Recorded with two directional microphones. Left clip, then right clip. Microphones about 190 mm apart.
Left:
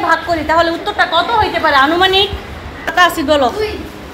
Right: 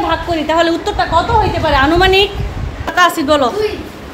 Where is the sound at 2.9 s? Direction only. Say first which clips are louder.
Even; 15° right (ahead or behind).